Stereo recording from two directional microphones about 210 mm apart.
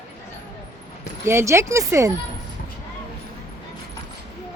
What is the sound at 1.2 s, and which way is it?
Speech, 15° right (ahead or behind).